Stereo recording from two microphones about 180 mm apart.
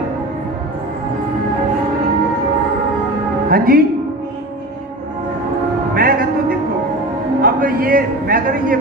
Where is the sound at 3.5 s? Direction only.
55° right (ahead or behind).